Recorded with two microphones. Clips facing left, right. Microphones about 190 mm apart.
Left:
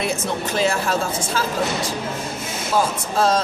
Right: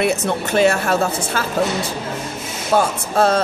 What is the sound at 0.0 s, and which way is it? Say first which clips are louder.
A woman's voice: right 5 dB; 65° right (ahead or behind).